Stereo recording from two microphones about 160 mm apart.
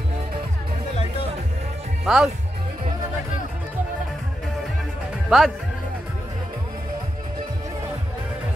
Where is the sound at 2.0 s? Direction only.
5° right (ahead or behind).